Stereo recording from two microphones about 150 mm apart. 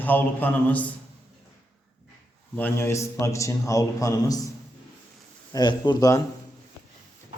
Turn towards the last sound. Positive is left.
turn(degrees=25)  # may be behind; listen again after turning